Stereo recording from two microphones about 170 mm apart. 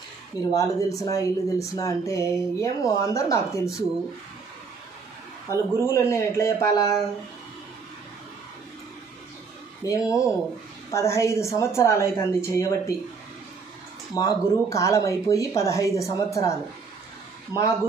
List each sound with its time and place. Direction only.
0.6 s speech: 20° left (ahead or behind)
5.5 s a woman's voice: 15° left (ahead or behind)
9.8 s a woman's voice: 20° left (ahead or behind)
14.1 s speech: 20° left (ahead or behind)
17.5 s speech: 10° right (ahead or behind)